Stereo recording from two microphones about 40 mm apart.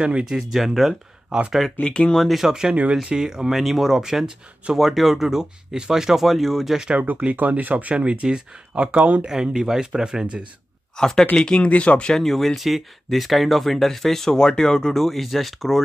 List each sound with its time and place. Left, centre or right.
0.0 s speech: right
1.8 s speech: left
2.1 s speech: centre
2.4 s speech: centre
2.7 s speech: right
3.0 s speech: centre
3.5 s speech: centre
6.2 s speech: centre
7.3 s speech: right
7.9 s speech: right
9.3 s speech: centre
11.0 s speech: centre; by 12.1 s left
12.1 s speech: centre